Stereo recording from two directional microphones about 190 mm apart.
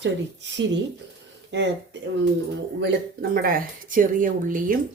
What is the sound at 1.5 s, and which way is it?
Speech, 70° right (ahead or behind).